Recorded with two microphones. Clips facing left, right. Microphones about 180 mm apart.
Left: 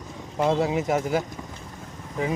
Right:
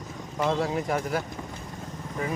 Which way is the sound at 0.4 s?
25° left (ahead or behind).